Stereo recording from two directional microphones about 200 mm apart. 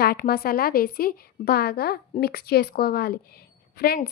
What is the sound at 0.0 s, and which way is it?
A woman's voice, 50° left (ahead or behind).